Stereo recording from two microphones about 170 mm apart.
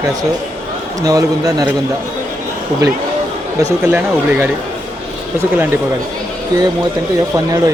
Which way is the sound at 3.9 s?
10° right (ahead or behind).